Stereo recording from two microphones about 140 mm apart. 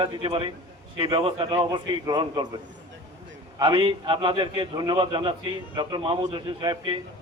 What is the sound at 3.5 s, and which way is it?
A man's voice, 40° right (ahead or behind).